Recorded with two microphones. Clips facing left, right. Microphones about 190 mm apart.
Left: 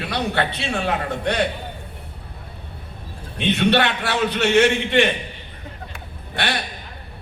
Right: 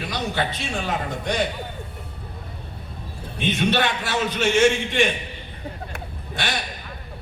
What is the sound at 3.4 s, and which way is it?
A man's voice, 65° left (ahead or behind).